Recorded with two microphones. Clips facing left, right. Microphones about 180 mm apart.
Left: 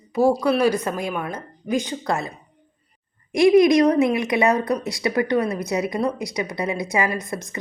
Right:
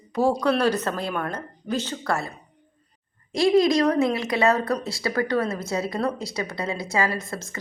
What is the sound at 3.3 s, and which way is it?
A woman's voice, 15° left (ahead or behind).